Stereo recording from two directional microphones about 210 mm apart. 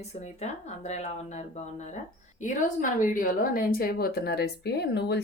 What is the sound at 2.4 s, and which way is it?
A woman's voice, 40° left (ahead or behind).